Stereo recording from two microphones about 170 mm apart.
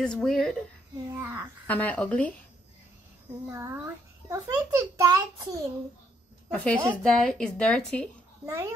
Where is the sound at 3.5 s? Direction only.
15° right (ahead or behind).